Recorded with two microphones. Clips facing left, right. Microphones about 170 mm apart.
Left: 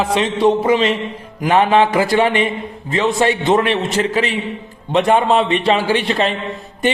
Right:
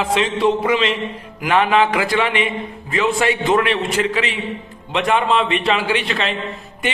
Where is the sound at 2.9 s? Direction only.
30° left (ahead or behind).